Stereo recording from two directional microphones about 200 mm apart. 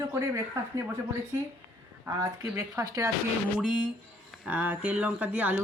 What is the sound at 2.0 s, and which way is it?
Speech, 15° right (ahead or behind).